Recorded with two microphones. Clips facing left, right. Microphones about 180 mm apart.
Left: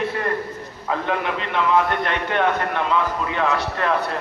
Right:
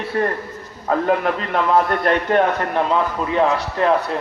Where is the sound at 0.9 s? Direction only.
45° right (ahead or behind).